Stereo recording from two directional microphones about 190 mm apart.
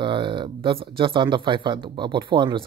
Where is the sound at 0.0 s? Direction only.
25° right (ahead or behind).